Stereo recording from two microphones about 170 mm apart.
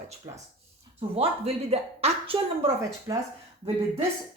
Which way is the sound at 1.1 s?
35° right (ahead or behind).